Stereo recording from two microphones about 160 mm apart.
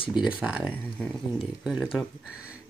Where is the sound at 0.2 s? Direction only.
5° right (ahead or behind).